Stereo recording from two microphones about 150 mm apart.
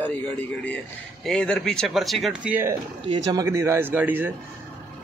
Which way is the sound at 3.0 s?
30° right (ahead or behind).